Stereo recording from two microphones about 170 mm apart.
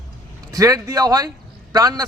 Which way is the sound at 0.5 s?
20° right (ahead or behind).